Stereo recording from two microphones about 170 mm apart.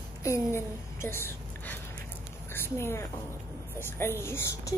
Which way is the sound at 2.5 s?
15° left (ahead or behind).